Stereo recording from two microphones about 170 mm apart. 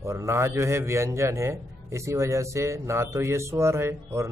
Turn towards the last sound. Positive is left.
turn(degrees=-15)  # may be behind; listen again after turning